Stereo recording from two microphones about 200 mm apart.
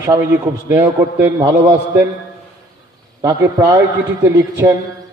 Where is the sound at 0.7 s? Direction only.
10° right (ahead or behind).